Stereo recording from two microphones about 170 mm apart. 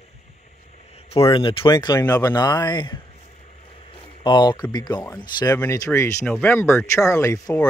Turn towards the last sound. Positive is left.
turn(degrees=20)  # may be behind; listen again after turning